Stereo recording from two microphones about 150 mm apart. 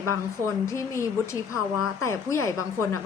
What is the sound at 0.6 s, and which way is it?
A woman's voice, 20° left (ahead or behind).